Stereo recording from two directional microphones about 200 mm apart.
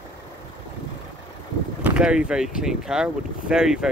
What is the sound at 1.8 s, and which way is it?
Speech, 5° right (ahead or behind).